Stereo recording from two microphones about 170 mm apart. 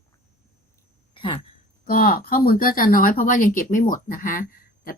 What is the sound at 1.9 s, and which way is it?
Speech, 55° left (ahead or behind).